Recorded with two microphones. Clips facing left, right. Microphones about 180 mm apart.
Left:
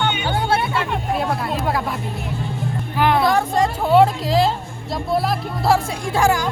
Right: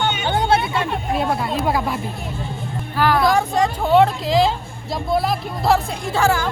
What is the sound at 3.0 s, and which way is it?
Speech, 20° left (ahead or behind).